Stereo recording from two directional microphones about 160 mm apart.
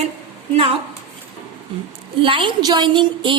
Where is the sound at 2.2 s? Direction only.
30° right (ahead or behind).